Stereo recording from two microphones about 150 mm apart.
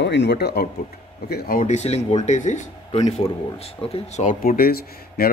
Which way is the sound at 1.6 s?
50° left (ahead or behind).